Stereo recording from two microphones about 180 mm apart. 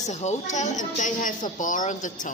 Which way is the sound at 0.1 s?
40° left (ahead or behind).